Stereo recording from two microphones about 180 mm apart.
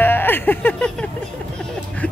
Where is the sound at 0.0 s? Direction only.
10° left (ahead or behind).